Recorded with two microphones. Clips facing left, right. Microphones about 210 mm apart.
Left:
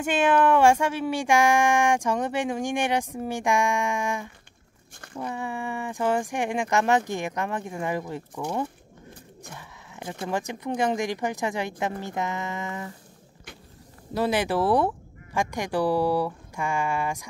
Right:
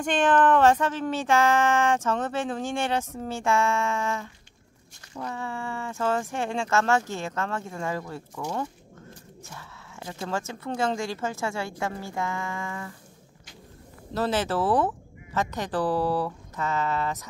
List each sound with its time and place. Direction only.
0.0 s speech: 10° left (ahead or behind)
9.4 s speech: 15° left (ahead or behind)
14.1 s speech: 15° left (ahead or behind)